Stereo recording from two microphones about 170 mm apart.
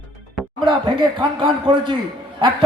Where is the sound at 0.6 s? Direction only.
30° right (ahead or behind).